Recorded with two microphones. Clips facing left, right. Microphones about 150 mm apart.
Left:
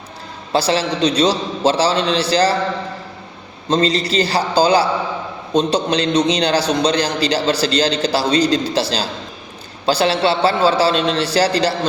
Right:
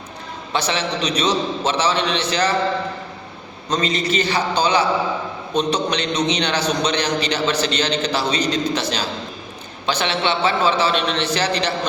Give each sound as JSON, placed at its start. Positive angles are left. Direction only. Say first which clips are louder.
{"t": 0.5, "sound": "a man's voice", "louder": "left 5 dB", "side_deg": 35}
{"t": 3.7, "sound": "a man's voice", "louder": "left 4 dB", "side_deg": 30}